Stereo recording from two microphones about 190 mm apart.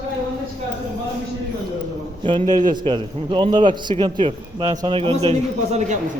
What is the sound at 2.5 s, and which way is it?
A man's voice, 20° right (ahead or behind).